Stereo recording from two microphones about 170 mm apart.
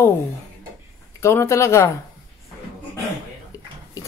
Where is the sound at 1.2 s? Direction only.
15° left (ahead or behind).